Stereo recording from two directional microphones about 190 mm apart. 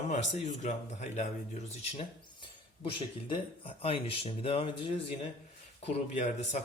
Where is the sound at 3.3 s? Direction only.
30° left (ahead or behind).